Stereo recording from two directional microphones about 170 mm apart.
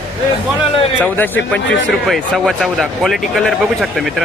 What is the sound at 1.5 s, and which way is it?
Speech, centre (ahead or behind).